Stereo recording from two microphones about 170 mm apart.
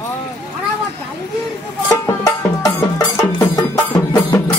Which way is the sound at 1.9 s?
20° left (ahead or behind).